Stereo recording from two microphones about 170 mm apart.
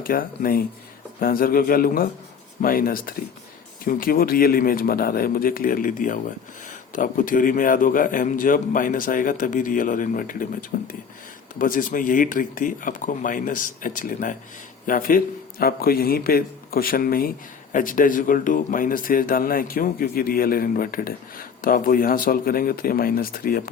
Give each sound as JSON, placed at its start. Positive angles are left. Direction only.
{"t": 0.0, "sound": "a man's voice", "side_deg": 55}